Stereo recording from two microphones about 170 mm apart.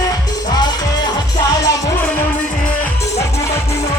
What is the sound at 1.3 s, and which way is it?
Music, 20° left (ahead or behind).